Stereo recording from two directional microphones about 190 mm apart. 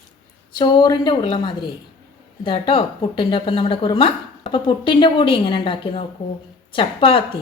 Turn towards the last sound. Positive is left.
turn(degrees=30)  # may be behind; listen again after turning